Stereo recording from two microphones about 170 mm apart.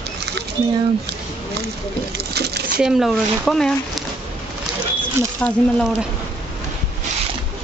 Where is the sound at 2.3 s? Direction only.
75° right (ahead or behind).